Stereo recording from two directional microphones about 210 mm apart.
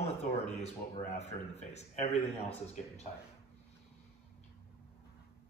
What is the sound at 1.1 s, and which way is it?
A man's voice, 30° left (ahead or behind).